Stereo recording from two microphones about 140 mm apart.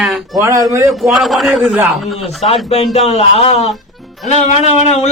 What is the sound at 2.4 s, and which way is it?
A man's voice, 45° left (ahead or behind).